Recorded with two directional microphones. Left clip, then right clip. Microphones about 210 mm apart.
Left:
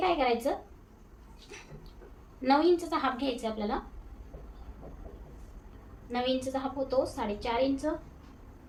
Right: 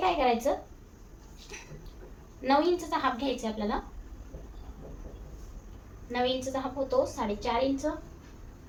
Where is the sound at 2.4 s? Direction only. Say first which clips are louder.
Even; 20° left (ahead or behind).